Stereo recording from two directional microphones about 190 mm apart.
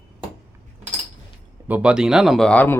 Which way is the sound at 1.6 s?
5° right (ahead or behind).